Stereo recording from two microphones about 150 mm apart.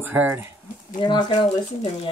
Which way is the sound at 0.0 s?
10° right (ahead or behind).